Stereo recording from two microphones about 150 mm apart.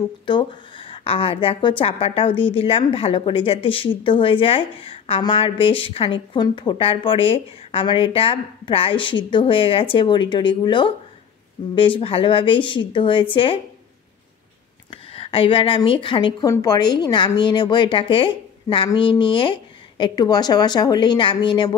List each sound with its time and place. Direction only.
0.3 s a woman's voice: 30° left (ahead or behind)
14.9 s a woman's voice: 40° left (ahead or behind)